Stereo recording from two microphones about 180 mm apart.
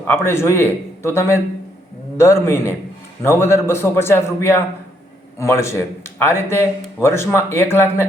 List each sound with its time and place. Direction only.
0.0 s a man's voice: 15° left (ahead or behind)